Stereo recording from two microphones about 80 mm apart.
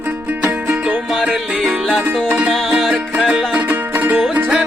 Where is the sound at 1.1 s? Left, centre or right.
Centre.